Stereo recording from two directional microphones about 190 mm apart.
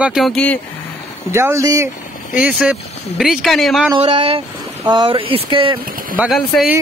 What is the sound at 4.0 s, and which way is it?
Speech, 30° right (ahead or behind).